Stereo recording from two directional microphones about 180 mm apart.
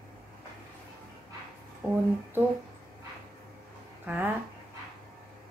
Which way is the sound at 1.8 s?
10° right (ahead or behind).